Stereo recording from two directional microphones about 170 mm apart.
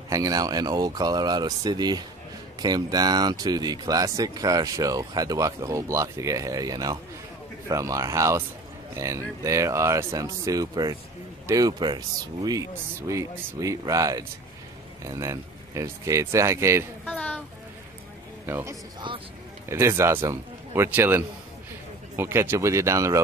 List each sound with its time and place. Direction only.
0.1 s speech: 20° right (ahead or behind)
17.0 s a sound: 10° left (ahead or behind)
18.5 s a man's voice: 15° right (ahead or behind)